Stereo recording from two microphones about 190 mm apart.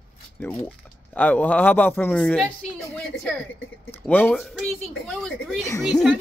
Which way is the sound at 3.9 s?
10° left (ahead or behind).